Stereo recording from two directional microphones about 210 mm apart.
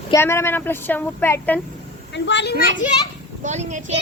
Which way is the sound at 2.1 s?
55° left (ahead or behind).